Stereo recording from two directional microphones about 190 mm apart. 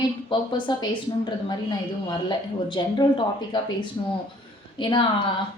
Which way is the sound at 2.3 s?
25° left (ahead or behind).